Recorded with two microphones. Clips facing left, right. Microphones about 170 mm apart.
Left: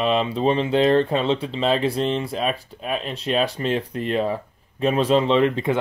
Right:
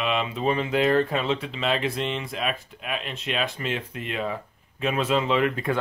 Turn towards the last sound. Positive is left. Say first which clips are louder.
# left 5 dB
turn(degrees=25)  # may be behind; listen again after turning